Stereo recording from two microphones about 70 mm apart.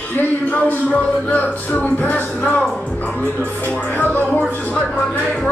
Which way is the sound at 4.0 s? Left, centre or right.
Left.